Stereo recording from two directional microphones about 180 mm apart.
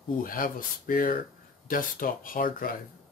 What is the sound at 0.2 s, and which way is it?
Speech, 50° left (ahead or behind).